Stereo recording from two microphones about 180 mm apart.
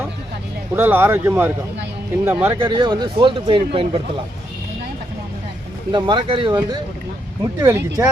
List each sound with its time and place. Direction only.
0.8 s speech: 10° right (ahead or behind)
2.6 s speech: 25° right (ahead or behind)
5.9 s speech: 25° right (ahead or behind)